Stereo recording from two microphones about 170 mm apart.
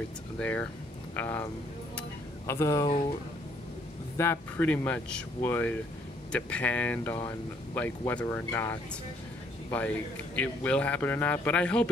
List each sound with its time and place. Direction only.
0.4 s a man's voice: 10° left (ahead or behind)
2.0 s a sound: 15° left (ahead or behind)
4.2 s a man's voice: 10° left (ahead or behind)